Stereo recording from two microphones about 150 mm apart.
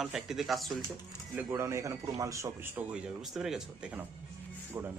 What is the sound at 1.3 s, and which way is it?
Speech, 15° right (ahead or behind).